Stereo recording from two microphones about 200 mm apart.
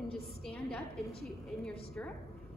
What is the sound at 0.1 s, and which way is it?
A woman's voice, 5° left (ahead or behind).